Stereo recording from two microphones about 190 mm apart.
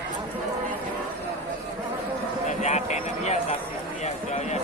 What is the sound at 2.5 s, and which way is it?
Vehicle, 35° left (ahead or behind).